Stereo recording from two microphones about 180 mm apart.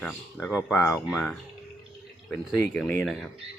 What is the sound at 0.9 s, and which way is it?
Speech, centre (ahead or behind).